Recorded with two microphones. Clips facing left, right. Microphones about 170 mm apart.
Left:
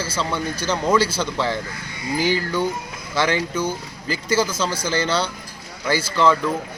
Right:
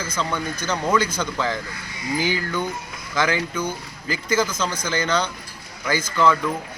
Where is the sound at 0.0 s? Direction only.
5° left (ahead or behind).